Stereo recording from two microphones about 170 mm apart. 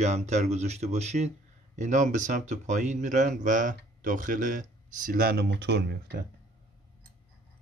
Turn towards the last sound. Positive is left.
turn(degrees=-80)